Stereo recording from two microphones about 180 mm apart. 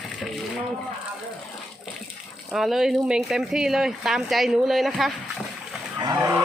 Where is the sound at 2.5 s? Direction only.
Centre (ahead or behind).